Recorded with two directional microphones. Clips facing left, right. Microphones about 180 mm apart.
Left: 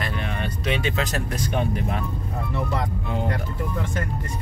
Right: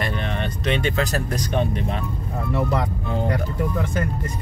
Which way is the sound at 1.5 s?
30° right (ahead or behind).